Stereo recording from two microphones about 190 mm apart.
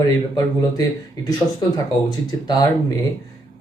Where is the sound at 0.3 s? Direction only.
20° left (ahead or behind).